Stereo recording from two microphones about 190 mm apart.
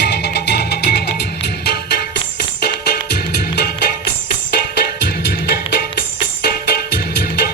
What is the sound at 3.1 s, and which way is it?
Music, 60° left (ahead or behind).